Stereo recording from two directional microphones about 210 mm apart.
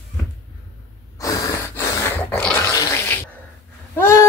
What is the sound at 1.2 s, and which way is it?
Snort, 15° left (ahead or behind).